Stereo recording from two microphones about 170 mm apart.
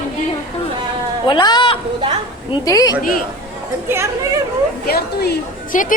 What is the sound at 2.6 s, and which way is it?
Speech, 20° left (ahead or behind).